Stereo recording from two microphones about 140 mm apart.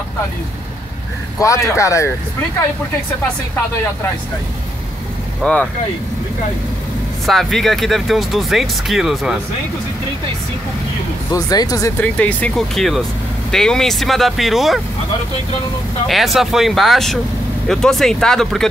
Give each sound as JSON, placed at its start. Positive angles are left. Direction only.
{"t": 1.4, "sound": "speech", "side_deg": 20}
{"t": 5.4, "sound": "speech", "side_deg": 10}
{"t": 7.2, "sound": "speech", "side_deg": 0}
{"t": 11.3, "sound": "speech", "side_deg": 25}
{"t": 12.0, "sound": "speech", "side_deg": 10}
{"t": 16.1, "sound": "speech", "side_deg": 0}